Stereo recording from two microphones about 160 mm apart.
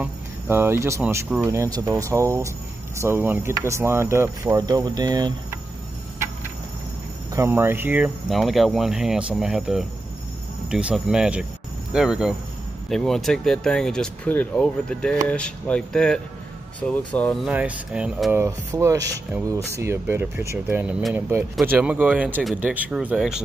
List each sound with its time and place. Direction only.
0.0 s speech: 15° right (ahead or behind)
7.3 s speech: 15° right (ahead or behind); by 17.5 s 5° left (ahead or behind)
17.5 s speech: 10° right (ahead or behind)
18.4 s speech: 15° right (ahead or behind)